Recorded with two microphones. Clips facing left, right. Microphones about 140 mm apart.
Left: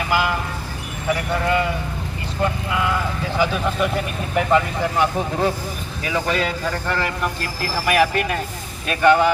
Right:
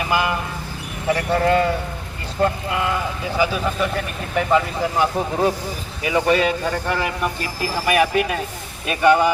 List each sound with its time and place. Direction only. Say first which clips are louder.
0.1 s speech: even; 20° right (ahead or behind)
1.3 s a man's voice: right 5 dB; 35° right (ahead or behind)
3.3 s speech: even; 10° right (ahead or behind)
3.8 s speech: left 1 dB; centre (ahead or behind)
6.0 s speech: right 4 dB; 15° right (ahead or behind)